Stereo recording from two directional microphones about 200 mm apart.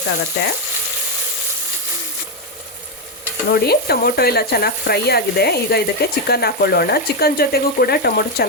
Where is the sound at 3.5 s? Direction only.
50° left (ahead or behind).